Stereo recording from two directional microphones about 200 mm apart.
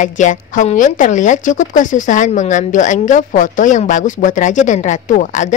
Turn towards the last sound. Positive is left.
turn(degrees=35)  # may be behind; listen again after turning